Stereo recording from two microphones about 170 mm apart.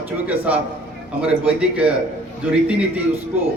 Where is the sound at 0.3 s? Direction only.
10° right (ahead or behind).